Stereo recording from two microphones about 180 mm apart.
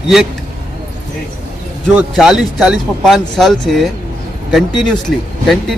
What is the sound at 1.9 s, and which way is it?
Speech, 5° right (ahead or behind).